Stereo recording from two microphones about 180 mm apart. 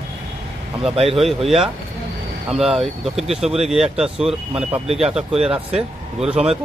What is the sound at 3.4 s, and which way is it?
Speech, 35° right (ahead or behind).